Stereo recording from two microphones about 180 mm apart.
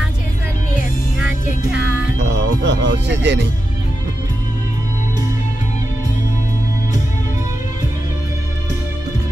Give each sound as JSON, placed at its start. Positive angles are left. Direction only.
{"t": 2.1, "sound": "music", "side_deg": -75}